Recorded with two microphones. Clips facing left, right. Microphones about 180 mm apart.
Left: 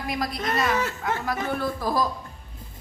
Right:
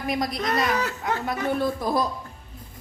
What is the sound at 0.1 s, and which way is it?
Speech, 20° right (ahead or behind).